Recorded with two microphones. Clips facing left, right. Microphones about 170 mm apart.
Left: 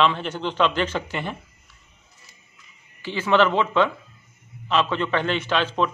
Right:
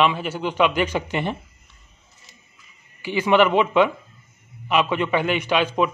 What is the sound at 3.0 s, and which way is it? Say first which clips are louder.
A man's voice: right 2 dB; 15° right (ahead or behind).